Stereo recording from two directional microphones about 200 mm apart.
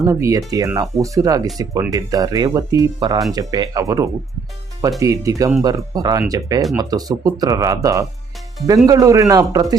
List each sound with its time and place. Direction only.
0.0 s speech: 15° right (ahead or behind)